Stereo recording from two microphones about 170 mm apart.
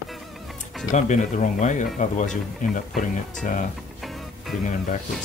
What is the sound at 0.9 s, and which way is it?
Speech, 45° left (ahead or behind).